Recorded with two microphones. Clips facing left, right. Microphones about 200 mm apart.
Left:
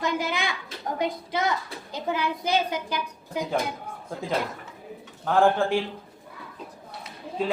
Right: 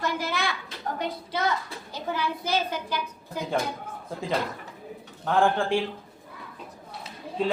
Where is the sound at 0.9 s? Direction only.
15° left (ahead or behind).